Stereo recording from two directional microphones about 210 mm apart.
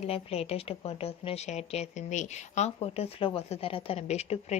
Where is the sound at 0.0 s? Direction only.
30° left (ahead or behind).